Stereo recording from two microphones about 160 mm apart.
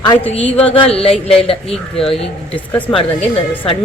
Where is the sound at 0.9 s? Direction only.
35° left (ahead or behind).